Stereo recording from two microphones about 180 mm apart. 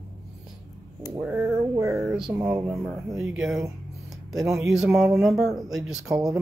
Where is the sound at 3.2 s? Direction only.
5° right (ahead or behind).